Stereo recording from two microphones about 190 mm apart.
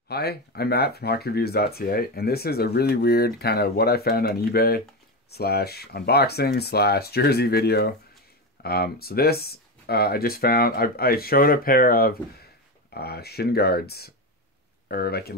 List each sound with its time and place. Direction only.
0.1 s speech: 55° left (ahead or behind)